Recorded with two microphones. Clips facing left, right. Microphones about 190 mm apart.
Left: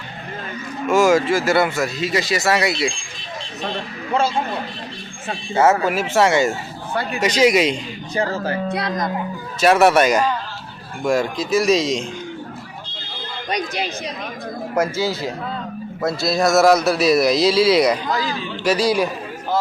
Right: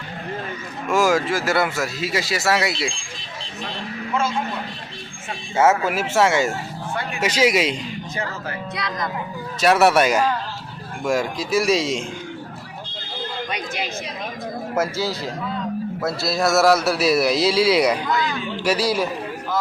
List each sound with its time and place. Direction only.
0.9 s speech: centre (ahead or behind)
4.1 s speech: 30° left (ahead or behind)
6.0 s speech: centre (ahead or behind)
8.1 s speech: 30° left (ahead or behind)
9.6 s a man's voice: centre (ahead or behind)
13.5 s speech: 40° left (ahead or behind)
14.8 s a man's voice: centre (ahead or behind)
18.1 s speech: 35° left (ahead or behind)
18.6 s a man's voice: 10° right (ahead or behind)